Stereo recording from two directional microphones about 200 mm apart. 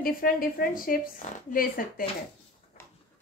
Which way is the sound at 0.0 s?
45° left (ahead or behind).